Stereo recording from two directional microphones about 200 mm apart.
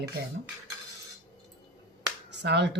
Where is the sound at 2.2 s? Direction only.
60° right (ahead or behind).